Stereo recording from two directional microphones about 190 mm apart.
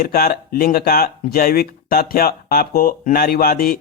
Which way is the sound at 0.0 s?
55° left (ahead or behind).